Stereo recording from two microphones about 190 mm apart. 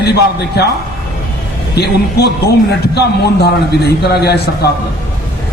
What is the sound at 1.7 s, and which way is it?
A man's voice, 60° left (ahead or behind).